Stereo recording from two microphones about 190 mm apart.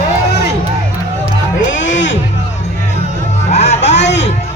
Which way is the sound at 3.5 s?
35° left (ahead or behind).